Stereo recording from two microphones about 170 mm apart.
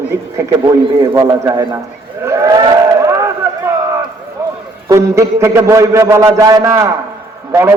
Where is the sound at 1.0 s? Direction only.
20° right (ahead or behind).